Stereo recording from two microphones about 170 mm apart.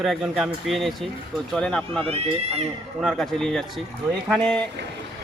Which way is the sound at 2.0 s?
35° right (ahead or behind).